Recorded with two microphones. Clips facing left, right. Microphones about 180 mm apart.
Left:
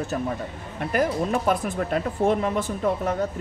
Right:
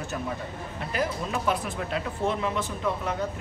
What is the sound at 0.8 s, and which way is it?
Speech, 50° left (ahead or behind).